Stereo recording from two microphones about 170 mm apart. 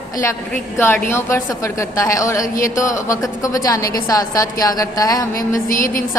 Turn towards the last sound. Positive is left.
turn(degrees=50)  # may be behind; listen again after turning